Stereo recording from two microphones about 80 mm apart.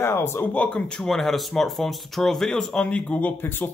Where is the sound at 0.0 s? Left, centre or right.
Left.